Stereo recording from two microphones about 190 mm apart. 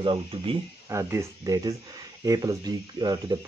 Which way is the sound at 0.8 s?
15° right (ahead or behind).